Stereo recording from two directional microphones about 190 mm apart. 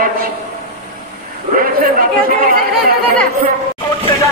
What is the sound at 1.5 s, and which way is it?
Speech, 50° right (ahead or behind).